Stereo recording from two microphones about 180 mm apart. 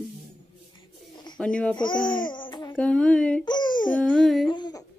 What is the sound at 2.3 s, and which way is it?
Speech, 25° left (ahead or behind).